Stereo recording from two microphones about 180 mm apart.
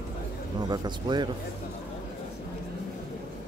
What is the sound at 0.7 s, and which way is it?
Speech, 25° right (ahead or behind).